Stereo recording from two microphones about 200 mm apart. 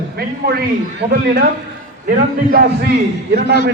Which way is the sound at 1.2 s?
50° right (ahead or behind).